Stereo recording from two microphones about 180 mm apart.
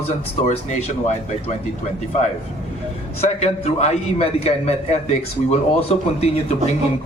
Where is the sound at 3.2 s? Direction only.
35° left (ahead or behind).